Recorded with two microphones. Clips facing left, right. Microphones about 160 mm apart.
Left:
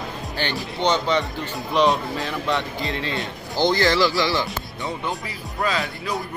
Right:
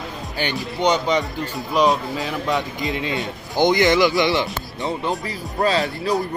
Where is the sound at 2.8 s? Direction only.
15° right (ahead or behind).